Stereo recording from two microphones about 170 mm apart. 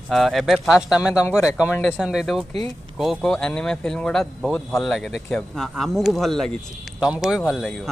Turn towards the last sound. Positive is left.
turn(degrees=0)  # may be behind; listen again after turning